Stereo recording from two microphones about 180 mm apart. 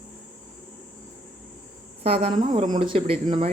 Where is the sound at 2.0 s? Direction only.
30° right (ahead or behind).